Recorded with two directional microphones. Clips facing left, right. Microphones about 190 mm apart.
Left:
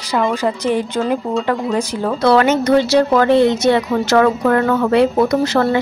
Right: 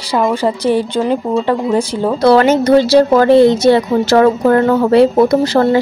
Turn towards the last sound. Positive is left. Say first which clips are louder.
# right 4 dB
turn(degrees=-35)  # may be behind; listen again after turning